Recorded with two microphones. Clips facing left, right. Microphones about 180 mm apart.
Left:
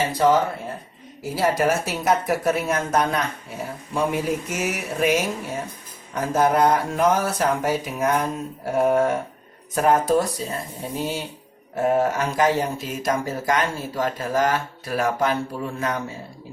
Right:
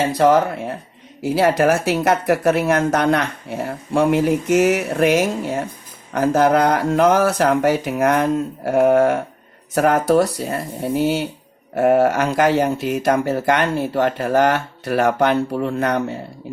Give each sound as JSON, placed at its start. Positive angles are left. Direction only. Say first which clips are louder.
{"t": 1.2, "sound": "speech", "louder": "right 5 dB", "side_deg": -75}